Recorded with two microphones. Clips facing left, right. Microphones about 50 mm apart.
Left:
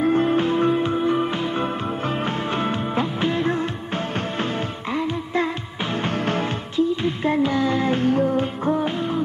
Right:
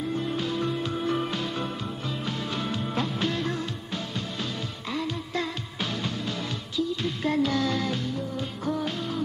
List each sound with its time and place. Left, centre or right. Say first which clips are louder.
0.0 s music: left 10 dB; left
2.2 s music: left 7 dB; left
3.0 s music: left 6 dB; left
4.9 s music: left 7 dB; left
6.0 s music: left 9 dB; left
6.8 s music: left 7 dB; left
8.0 s music: left 12 dB; left
8.6 s music: left 7 dB; left